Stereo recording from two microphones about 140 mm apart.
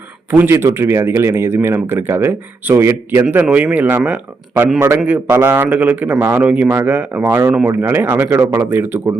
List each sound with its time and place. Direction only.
0.3 s speech: 15° right (ahead or behind)